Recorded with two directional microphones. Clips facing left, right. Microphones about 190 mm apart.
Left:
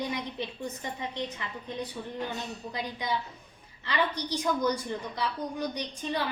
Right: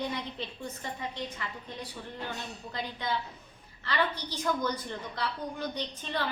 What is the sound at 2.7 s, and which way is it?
A woman's voice, 15° left (ahead or behind).